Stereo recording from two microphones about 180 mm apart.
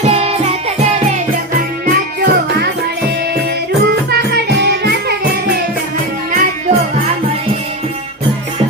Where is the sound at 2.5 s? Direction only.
65° right (ahead or behind).